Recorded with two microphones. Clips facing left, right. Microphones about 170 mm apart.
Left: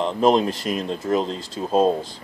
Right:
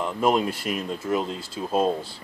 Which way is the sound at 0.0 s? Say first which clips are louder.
Left 4 dB; 25° left (ahead or behind).